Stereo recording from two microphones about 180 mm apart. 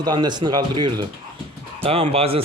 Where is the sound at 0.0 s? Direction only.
25° right (ahead or behind).